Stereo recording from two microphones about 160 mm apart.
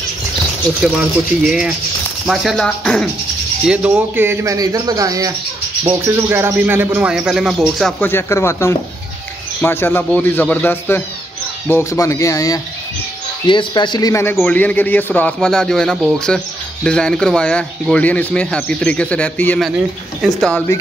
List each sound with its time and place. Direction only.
1.4 s music: 5° right (ahead or behind)
3.6 s a man's voice: 10° right (ahead or behind)
8.0 s speech: 15° left (ahead or behind)
14.3 s speech: 10° left (ahead or behind)
16.3 s music: 5° left (ahead or behind)
16.8 s speech: 5° left (ahead or behind)
20.2 s music: centre (ahead or behind)